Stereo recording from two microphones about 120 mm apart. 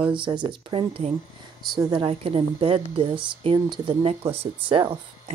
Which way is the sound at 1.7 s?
40° right (ahead or behind).